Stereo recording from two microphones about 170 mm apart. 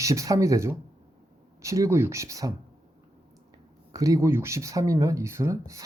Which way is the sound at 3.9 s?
20° right (ahead or behind).